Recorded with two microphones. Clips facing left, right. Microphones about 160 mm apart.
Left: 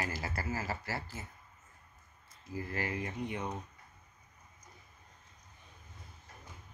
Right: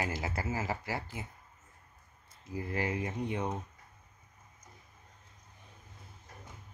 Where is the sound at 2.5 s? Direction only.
20° right (ahead or behind).